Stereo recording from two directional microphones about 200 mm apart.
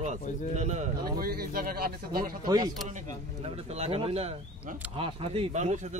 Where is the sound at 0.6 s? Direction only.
35° right (ahead or behind).